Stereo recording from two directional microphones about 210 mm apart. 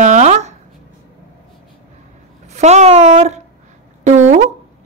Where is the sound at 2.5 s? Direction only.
35° right (ahead or behind).